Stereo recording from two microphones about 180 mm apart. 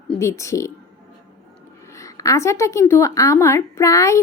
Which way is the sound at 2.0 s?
20° left (ahead or behind).